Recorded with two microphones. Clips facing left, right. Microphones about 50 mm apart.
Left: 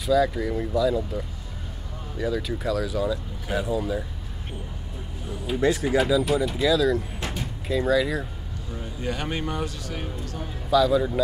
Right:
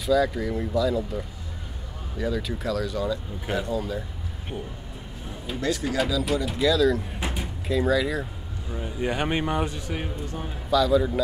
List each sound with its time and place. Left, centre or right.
0.0 s speech: centre
5.6 s speech: left
6.4 s speech: centre
7.2 s a sound: centre
7.6 s speech: centre
8.7 s a man's voice: right
10.7 s speech: centre